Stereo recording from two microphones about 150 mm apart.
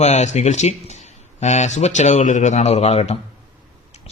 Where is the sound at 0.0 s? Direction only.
50° left (ahead or behind).